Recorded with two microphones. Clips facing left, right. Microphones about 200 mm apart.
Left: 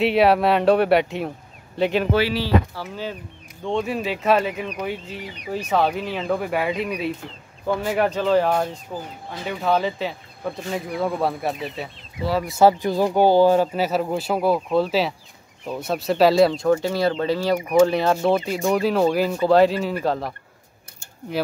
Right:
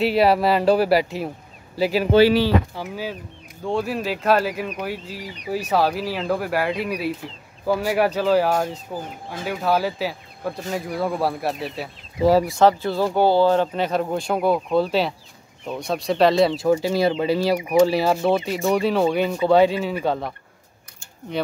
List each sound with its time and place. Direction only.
0.0 s speech: centre (ahead or behind)
12.2 s speech: 40° right (ahead or behind)
12.4 s speech: 10° left (ahead or behind)